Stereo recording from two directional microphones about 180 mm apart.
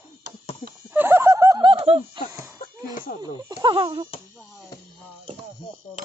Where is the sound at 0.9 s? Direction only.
10° right (ahead or behind); by 2.2 s 30° right (ahead or behind).